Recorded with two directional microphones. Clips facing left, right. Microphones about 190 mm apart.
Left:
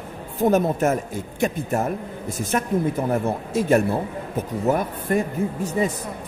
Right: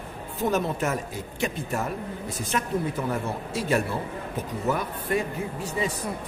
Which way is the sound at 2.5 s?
45° left (ahead or behind).